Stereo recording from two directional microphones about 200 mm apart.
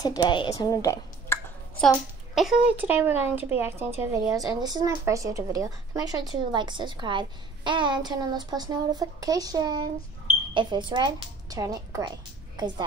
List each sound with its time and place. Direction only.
0.0 s speech: 20° left (ahead or behind)
1.8 s a child's voice: centre (ahead or behind); by 12.8 s 20° right (ahead or behind)